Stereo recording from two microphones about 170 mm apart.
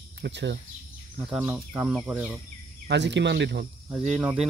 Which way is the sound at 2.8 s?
90° right.